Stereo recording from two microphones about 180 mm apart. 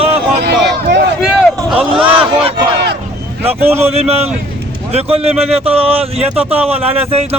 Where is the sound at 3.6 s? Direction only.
15° right (ahead or behind).